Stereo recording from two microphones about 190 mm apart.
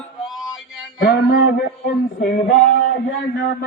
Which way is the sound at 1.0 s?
55° left (ahead or behind).